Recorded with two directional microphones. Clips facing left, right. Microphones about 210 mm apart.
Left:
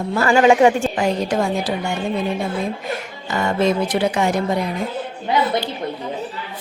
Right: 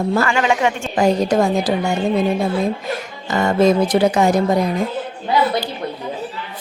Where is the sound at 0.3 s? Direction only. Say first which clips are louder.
Left 5 dB; 35° left (ahead or behind).